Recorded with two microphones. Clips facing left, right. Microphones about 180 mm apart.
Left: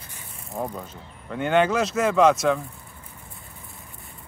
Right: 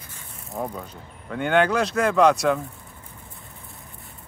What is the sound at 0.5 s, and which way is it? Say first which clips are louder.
Speech: even; centre (ahead or behind).